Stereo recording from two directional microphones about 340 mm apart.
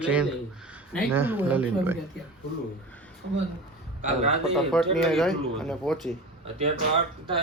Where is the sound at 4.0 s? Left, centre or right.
Centre.